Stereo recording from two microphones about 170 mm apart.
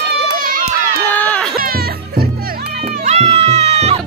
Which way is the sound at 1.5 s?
60° right (ahead or behind).